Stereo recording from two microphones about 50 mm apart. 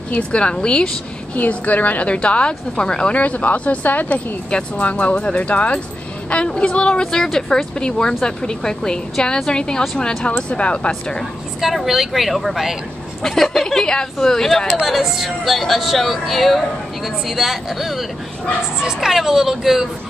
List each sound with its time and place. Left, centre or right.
0.1 s a woman's voice: left
1.3 s a woman's voice: left
3.2 s a woman's voice: left
11.6 s a woman's voice: centre
14.9 s speech: centre